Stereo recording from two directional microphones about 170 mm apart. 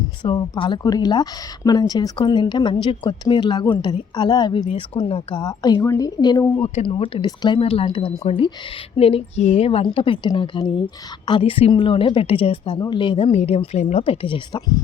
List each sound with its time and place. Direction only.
0.2 s speech: 25° left (ahead or behind)
6.6 s speech: 30° left (ahead or behind)